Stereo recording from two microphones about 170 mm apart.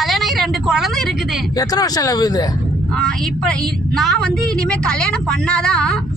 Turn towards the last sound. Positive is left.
turn(degrees=5)  # may be behind; listen again after turning